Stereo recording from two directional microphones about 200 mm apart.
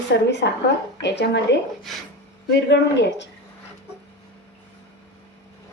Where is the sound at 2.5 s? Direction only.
60° left (ahead or behind).